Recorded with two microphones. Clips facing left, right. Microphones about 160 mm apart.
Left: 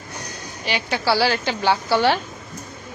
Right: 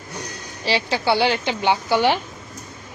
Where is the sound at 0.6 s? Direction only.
30° right (ahead or behind).